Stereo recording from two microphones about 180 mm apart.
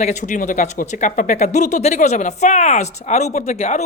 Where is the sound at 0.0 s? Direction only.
40° left (ahead or behind).